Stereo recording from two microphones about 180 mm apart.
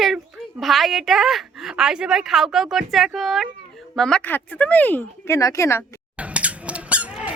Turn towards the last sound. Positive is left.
turn(degrees=-5)  # may be behind; listen again after turning